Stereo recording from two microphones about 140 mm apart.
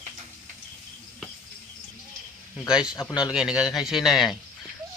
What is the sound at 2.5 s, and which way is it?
A man's voice, 5° right (ahead or behind).